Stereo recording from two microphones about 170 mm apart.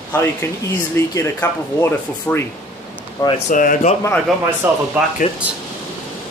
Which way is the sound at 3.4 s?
50° left (ahead or behind).